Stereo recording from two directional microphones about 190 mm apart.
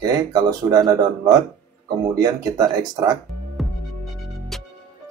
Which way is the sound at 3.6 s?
Centre (ahead or behind).